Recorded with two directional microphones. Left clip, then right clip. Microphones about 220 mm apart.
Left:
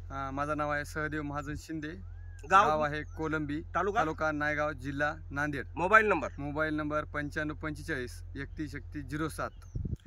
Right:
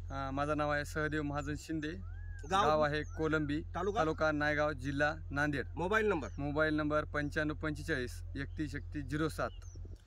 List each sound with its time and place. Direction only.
0.1 s speech: 5° right (ahead or behind)
5.8 s speech: 15° left (ahead or behind)
6.3 s speech: 10° right (ahead or behind)